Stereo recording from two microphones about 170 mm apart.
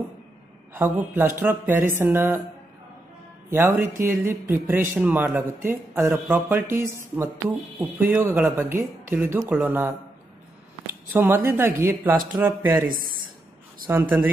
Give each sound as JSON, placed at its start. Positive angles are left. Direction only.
{"t": 0.7, "sound": "speech", "side_deg": -10}
{"t": 3.4, "sound": "speech", "side_deg": -10}
{"t": 11.1, "sound": "speech", "side_deg": -10}
{"t": 12.8, "sound": "speech", "side_deg": -55}
{"t": 13.8, "sound": "speech", "side_deg": -15}